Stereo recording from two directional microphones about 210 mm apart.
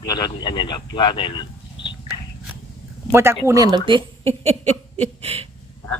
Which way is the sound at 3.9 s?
25° right (ahead or behind).